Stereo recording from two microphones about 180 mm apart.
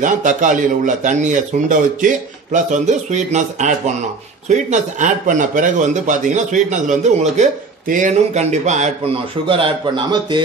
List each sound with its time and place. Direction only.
0.0 s a man's voice: 45° right (ahead or behind)